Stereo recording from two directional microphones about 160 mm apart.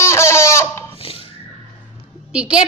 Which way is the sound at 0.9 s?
35° left (ahead or behind).